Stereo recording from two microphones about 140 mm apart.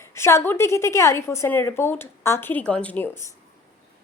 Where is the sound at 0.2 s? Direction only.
20° left (ahead or behind).